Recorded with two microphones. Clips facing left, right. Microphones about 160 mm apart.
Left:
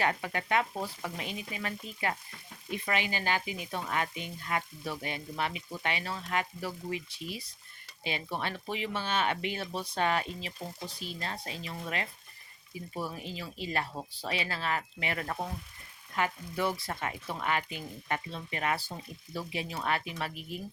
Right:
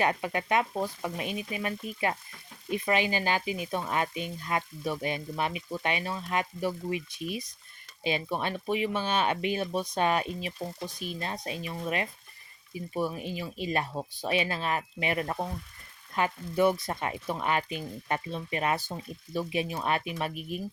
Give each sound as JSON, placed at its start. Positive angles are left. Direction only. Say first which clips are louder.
{"t": 0.0, "sound": "frying", "louder": "right 3 dB", "side_deg": -20}
{"t": 8.0, "sound": "speech", "louder": "right 5 dB", "side_deg": -20}
{"t": 13.0, "sound": "frying", "louder": "right 6 dB", "side_deg": -15}